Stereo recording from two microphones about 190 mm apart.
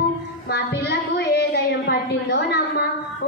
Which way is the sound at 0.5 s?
60° left (ahead or behind).